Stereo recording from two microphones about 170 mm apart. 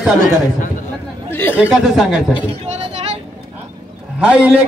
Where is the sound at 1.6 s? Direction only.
5° right (ahead or behind).